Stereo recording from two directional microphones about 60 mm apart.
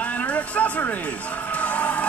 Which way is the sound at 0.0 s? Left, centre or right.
Left.